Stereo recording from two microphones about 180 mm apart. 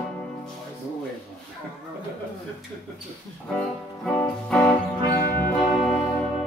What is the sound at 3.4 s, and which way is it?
Music, 5° left (ahead or behind).